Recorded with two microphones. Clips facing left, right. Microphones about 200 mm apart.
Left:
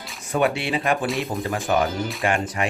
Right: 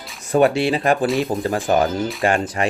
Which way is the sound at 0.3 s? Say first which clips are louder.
Right 6 dB; 35° right (ahead or behind).